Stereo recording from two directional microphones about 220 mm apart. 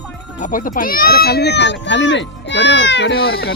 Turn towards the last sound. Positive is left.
turn(degrees=45)  # may be behind; listen again after turning